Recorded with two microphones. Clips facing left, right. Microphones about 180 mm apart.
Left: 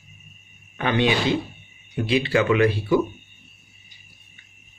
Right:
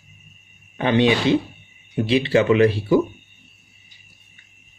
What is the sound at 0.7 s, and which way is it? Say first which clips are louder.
Speech: right 4 dB; 30° right (ahead or behind).